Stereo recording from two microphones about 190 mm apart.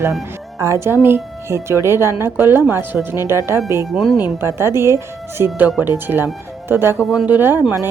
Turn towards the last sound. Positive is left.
turn(degrees=-10)  # may be behind; listen again after turning